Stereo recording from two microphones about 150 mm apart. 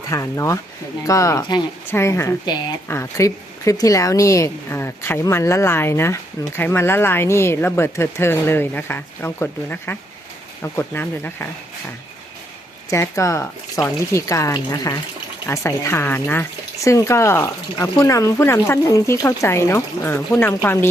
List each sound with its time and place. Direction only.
0.1 s speech: 20° left (ahead or behind)
12.9 s speech: 20° left (ahead or behind)